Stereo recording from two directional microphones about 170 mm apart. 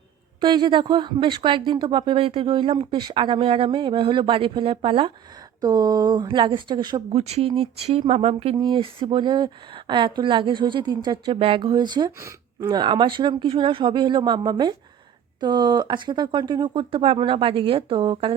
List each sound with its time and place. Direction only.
0.4 s speech: 25° right (ahead or behind)